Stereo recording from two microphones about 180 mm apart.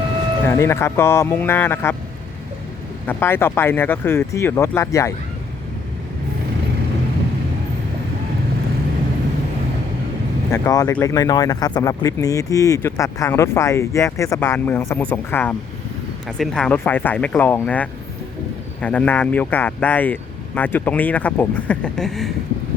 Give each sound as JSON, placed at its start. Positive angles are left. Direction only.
{"t": 0.4, "sound": "speech", "side_deg": 15}
{"t": 3.1, "sound": "speech", "side_deg": 10}
{"t": 10.5, "sound": "speech", "side_deg": 20}